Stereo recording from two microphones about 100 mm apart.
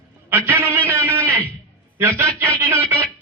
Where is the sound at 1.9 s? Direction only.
25° right (ahead or behind).